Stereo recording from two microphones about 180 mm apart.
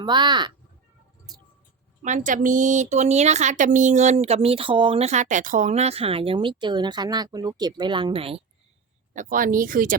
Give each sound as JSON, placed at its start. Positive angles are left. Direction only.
{"t": 0.0, "sound": "speech", "side_deg": -25}
{"t": 2.0, "sound": "speech", "side_deg": -45}
{"t": 9.1, "sound": "speech", "side_deg": -50}